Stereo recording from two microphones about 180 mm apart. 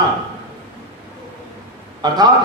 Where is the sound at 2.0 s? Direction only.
20° right (ahead or behind).